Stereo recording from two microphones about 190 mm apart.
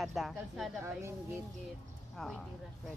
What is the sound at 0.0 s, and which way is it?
Speech, centre (ahead or behind).